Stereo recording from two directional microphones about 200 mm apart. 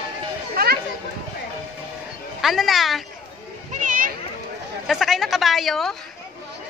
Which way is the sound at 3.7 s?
40° right (ahead or behind).